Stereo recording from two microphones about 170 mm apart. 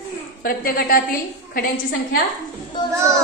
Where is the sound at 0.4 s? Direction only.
60° left (ahead or behind).